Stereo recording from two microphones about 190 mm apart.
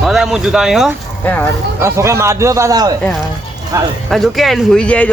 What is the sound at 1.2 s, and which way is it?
Speech, 10° left (ahead or behind).